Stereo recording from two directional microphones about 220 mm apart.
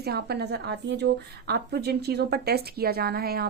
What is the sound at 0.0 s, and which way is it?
Speech, 45° right (ahead or behind).